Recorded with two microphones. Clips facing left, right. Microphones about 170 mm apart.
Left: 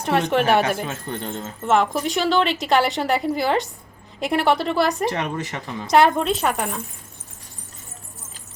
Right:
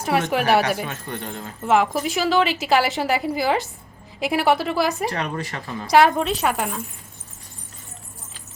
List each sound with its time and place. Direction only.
0.0 s a woman's voice: 5° right (ahead or behind)
0.9 s speech: 30° left (ahead or behind)
1.6 s a woman's voice: 5° right (ahead or behind)
5.0 s speech: 20° left (ahead or behind)
5.9 s a woman's voice: centre (ahead or behind)